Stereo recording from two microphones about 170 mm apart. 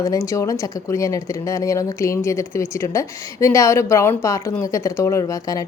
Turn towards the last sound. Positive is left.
turn(degrees=20)  # may be behind; listen again after turning